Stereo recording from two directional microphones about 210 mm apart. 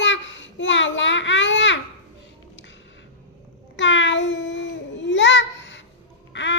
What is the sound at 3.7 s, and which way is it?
A child's voice, 60° left (ahead or behind).